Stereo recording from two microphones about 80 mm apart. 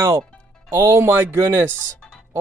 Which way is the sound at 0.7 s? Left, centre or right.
Right.